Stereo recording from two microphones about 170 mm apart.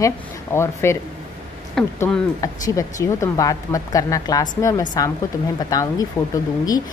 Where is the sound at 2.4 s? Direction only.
20° left (ahead or behind).